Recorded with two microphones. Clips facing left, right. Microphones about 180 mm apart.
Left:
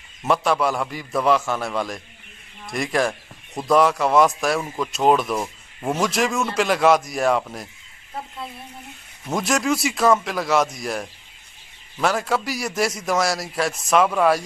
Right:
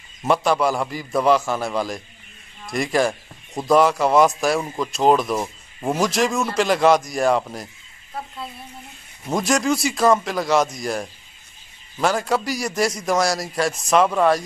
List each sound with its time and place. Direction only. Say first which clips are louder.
0.3 s a man's voice: right 1 dB; centre (ahead or behind)
9.3 s a man's voice: right 2 dB; centre (ahead or behind)